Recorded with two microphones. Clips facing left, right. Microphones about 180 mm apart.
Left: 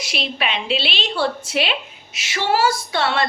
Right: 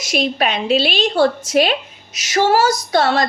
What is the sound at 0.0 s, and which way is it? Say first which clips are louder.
A woman's voice: right 7 dB; 45° right (ahead or behind).